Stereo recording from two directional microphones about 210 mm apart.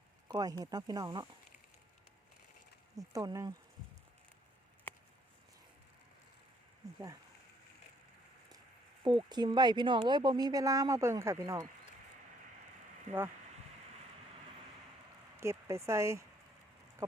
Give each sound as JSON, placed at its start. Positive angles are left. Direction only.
{"t": 0.3, "sound": "speech", "side_deg": -20}
{"t": 3.1, "sound": "speech", "side_deg": -15}
{"t": 9.0, "sound": "speech", "side_deg": -20}
{"t": 15.4, "sound": "speech", "side_deg": -15}
{"t": 17.0, "sound": "a sound", "side_deg": -15}